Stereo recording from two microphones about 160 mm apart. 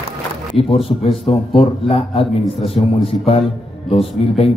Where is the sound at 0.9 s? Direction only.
35° left (ahead or behind).